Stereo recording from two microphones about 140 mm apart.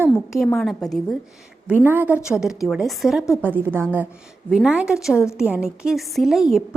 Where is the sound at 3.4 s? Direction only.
15° right (ahead or behind).